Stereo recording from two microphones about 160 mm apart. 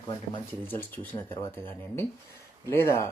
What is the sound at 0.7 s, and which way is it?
Speech, 10° left (ahead or behind).